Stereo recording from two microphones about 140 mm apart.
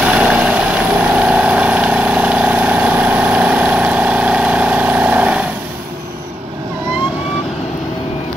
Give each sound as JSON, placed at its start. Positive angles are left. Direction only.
{"t": 0.0, "sound": "vehicle", "side_deg": -5}